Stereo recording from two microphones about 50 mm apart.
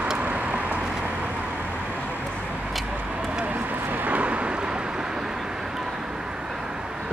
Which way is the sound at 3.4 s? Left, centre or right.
Right.